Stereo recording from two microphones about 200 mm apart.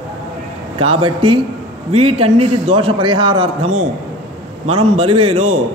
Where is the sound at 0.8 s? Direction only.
25° right (ahead or behind).